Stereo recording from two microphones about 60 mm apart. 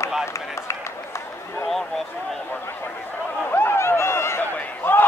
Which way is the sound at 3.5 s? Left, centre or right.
Left.